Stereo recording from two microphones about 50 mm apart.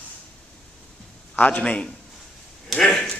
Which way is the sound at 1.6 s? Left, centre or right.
Left.